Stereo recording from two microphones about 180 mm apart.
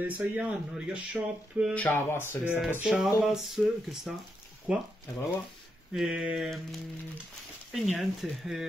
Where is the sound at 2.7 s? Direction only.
5° right (ahead or behind).